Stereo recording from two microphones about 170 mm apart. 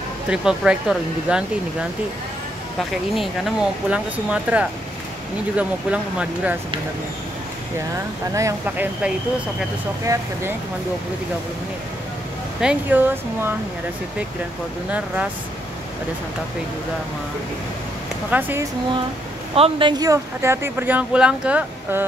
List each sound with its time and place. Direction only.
0.3 s speech: 5° right (ahead or behind)
3.2 s speech: 5° right (ahead or behind)
8.3 s speech: 20° right (ahead or behind)
12.5 s speech: 10° right (ahead or behind)
14.9 s speech: 10° right (ahead or behind)
18.3 s speech: 10° right (ahead or behind)
19.5 s speech: 30° right (ahead or behind); by 22.0 s 10° right (ahead or behind)